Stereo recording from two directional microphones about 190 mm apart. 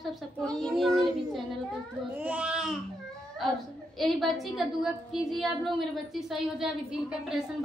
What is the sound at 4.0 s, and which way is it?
A woman's voice, centre (ahead or behind).